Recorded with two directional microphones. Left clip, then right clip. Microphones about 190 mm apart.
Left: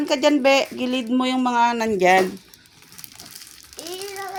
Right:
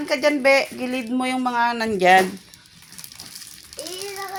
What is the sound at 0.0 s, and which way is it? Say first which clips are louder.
Speech: left 1 dB; 20° left (ahead or behind).